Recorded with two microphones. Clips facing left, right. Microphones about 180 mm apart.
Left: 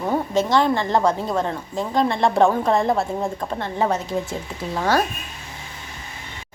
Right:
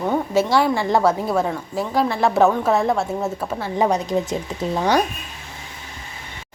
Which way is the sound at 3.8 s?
15° right (ahead or behind).